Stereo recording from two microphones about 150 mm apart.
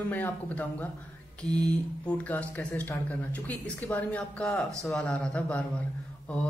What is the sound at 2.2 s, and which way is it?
Speech, 10° left (ahead or behind).